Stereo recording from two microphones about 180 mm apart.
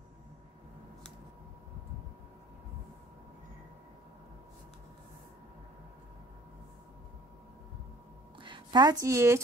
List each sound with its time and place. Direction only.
8.4 s a woman's voice: 25° right (ahead or behind)